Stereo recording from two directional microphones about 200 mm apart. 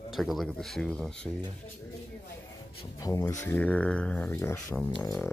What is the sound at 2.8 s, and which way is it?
Speech, 15° left (ahead or behind).